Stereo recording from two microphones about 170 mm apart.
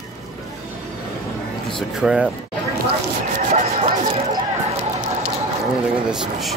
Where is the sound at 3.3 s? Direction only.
45° right (ahead or behind).